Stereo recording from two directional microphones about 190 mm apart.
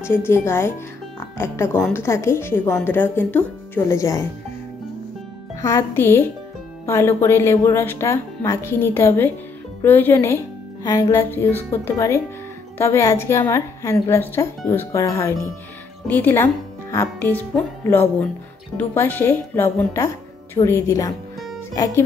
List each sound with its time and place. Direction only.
0.0 s a woman's voice: 10° left (ahead or behind)
5.6 s a woman's voice: 15° left (ahead or behind)